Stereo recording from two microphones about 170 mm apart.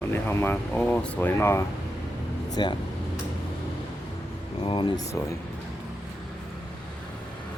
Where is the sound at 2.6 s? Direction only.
25° left (ahead or behind).